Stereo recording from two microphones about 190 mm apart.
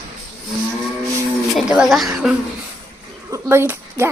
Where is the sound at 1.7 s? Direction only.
Centre (ahead or behind).